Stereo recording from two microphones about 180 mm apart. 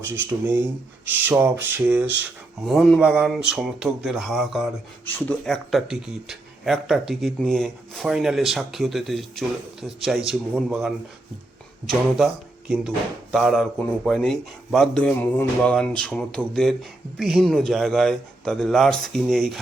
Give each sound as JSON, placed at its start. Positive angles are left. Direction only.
{"t": 0.0, "sound": "speech", "side_deg": -10}
{"t": 2.6, "sound": "speech", "side_deg": 0}